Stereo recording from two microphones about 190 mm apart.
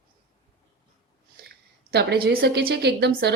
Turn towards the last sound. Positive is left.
turn(degrees=-60)  # may be behind; listen again after turning